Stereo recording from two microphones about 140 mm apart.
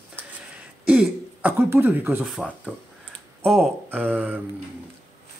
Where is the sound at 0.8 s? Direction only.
10° right (ahead or behind).